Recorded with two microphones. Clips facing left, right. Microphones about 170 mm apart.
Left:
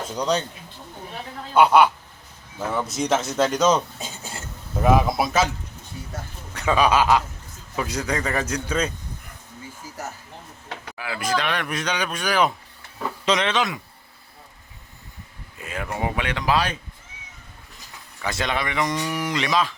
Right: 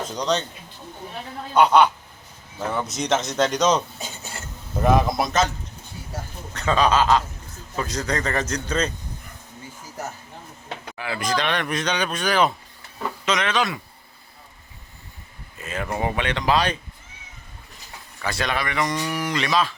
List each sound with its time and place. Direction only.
0.1 s speech: 10° left (ahead or behind)
1.5 s speech: 5° left (ahead or behind)
6.5 s speech: 10° left (ahead or behind)
10.9 s speech: 5° left (ahead or behind)
13.2 s speech: 30° left (ahead or behind)
15.6 s speech: 10° left (ahead or behind)
18.2 s speech: 20° left (ahead or behind)
18.9 s speech: 5° left (ahead or behind)
19.2 s speech: 15° left (ahead or behind)